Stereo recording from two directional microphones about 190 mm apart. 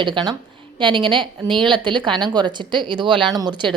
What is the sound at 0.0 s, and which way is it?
Speech, 25° right (ahead or behind).